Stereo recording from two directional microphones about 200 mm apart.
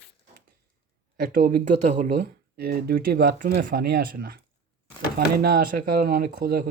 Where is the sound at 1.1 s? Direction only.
45° right (ahead or behind).